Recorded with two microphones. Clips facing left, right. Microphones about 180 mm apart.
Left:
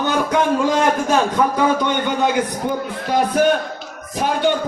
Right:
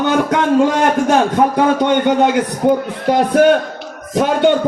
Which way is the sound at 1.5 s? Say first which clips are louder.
Right 4 dB; 65° right (ahead or behind).